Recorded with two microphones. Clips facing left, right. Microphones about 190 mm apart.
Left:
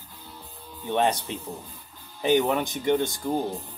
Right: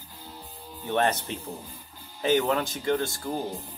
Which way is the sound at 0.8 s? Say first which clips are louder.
Left 1 dB; 15° left (ahead or behind).